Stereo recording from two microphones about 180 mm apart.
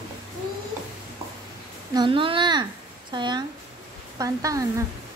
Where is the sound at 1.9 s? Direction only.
25° right (ahead or behind).